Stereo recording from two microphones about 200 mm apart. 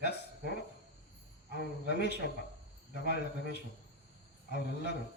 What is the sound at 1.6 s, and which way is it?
Speech, 60° left (ahead or behind).